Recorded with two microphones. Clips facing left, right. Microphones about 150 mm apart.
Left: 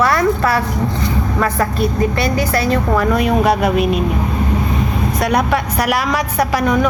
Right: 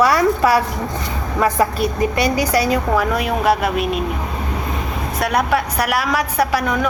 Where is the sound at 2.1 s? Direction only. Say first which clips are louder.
Even; 15° right (ahead or behind).